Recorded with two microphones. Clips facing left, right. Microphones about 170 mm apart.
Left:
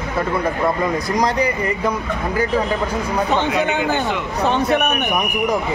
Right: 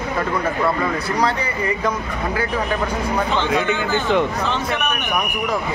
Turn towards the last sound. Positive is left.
turn(degrees=40)  # may be behind; listen again after turning